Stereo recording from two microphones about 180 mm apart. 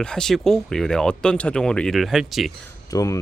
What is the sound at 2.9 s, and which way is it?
Speech, 20° left (ahead or behind).